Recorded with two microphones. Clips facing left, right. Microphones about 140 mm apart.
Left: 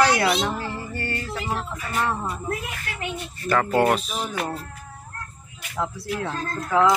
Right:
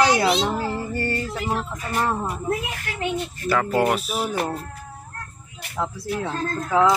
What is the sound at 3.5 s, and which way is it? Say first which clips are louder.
Speech: left 1 dB; 5° right (ahead or behind).